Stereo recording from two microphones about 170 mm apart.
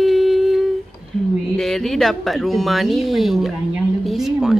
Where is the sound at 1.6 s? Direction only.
Centre (ahead or behind).